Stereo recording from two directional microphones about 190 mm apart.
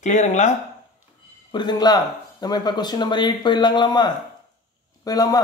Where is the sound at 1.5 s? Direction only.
20° left (ahead or behind).